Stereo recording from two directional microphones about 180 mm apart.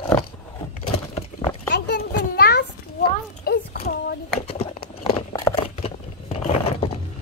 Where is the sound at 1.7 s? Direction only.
60° left (ahead or behind).